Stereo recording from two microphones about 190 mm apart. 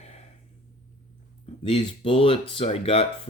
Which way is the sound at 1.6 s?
30° left (ahead or behind).